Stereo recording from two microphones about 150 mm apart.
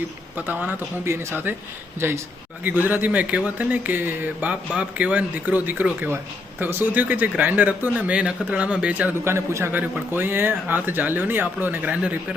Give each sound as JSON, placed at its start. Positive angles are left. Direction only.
{"t": 0.3, "sound": "speech", "side_deg": -10}